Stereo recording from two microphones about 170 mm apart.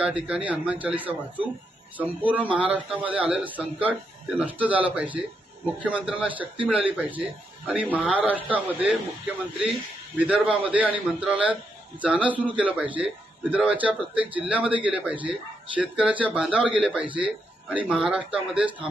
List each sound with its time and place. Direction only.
0.0 s a man's voice: 5° right (ahead or behind)
10.1 s a man's voice: 10° right (ahead or behind)